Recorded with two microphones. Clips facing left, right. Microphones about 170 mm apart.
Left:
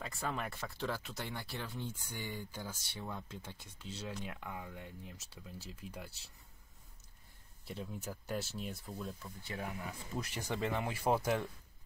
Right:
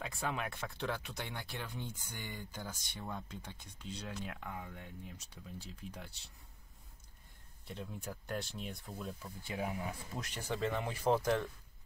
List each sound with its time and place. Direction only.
0.0 s speech: centre (ahead or behind)
7.6 s speech: 5° left (ahead or behind)
9.5 s speech: 20° right (ahead or behind)
10.1 s speech: 5° left (ahead or behind)